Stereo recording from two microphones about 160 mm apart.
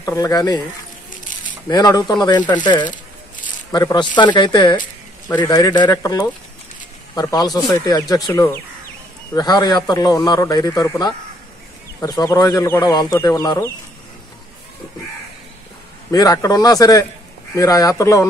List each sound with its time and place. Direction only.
0.0 s a man's voice: 20° left (ahead or behind)
1.7 s a man's voice: 25° left (ahead or behind)
16.1 s a man's voice: 20° left (ahead or behind)